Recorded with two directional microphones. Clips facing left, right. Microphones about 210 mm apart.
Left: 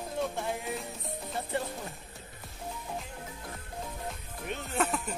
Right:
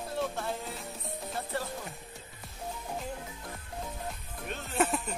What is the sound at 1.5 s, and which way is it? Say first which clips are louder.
Music: left 3 dB; 25° left (ahead or behind).